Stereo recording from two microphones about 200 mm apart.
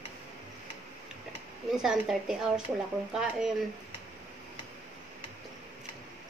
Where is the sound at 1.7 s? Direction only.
5° right (ahead or behind).